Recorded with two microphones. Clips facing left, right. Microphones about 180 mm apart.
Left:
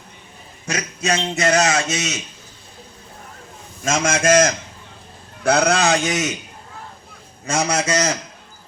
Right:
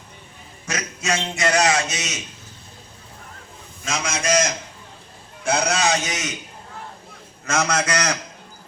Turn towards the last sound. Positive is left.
turn(degrees=10)  # may be behind; listen again after turning